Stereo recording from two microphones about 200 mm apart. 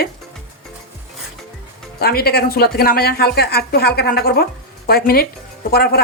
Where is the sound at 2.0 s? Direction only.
50° left (ahead or behind).